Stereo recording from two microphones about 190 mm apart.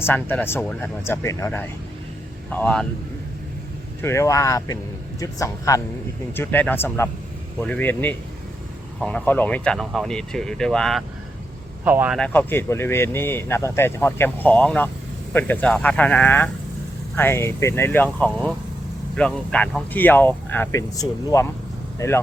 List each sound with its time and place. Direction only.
0.0 s speech: 10° left (ahead or behind)
4.0 s speech: 15° left (ahead or behind)
11.9 s speech: 10° right (ahead or behind)
12.2 s speech: 10° left (ahead or behind)